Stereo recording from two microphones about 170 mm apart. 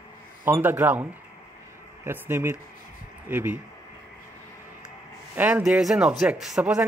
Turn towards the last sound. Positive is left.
turn(degrees=-5)  # may be behind; listen again after turning